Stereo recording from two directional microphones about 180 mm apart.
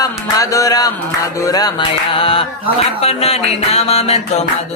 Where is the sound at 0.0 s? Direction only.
20° left (ahead or behind); by 4.4 s 35° left (ahead or behind).